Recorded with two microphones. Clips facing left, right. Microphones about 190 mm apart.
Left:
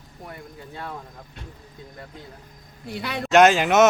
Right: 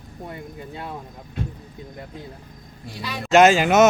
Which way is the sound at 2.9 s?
60° left (ahead or behind).